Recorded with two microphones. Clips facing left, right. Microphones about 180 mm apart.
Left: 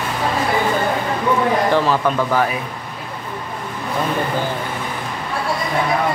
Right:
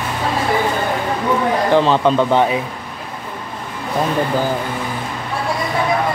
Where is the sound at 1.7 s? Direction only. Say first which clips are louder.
Right 4 dB; 25° right (ahead or behind).